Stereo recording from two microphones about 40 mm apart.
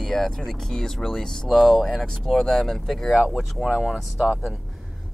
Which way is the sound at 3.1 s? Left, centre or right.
Centre.